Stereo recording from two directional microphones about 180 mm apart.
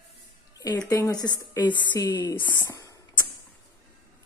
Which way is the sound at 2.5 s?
20° left (ahead or behind).